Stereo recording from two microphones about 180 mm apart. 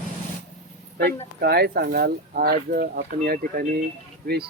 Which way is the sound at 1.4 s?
60° right (ahead or behind).